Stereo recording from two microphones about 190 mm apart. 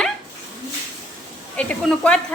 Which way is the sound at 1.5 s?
5° left (ahead or behind).